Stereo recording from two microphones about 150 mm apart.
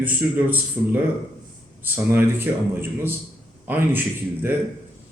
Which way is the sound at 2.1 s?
15° right (ahead or behind).